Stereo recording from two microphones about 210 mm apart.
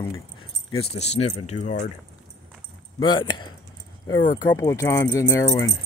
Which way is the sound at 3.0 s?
20° left (ahead or behind).